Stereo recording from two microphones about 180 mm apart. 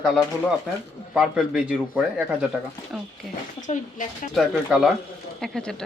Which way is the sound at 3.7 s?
40° left (ahead or behind).